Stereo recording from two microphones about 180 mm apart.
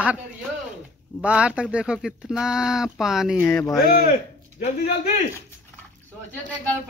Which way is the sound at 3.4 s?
10° left (ahead or behind).